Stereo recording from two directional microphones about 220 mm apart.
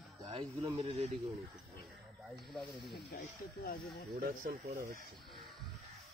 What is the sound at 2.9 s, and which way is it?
Speech, 50° left (ahead or behind).